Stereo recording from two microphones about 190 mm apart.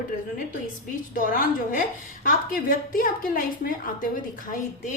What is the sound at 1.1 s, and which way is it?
A woman's voice, 45° left (ahead or behind).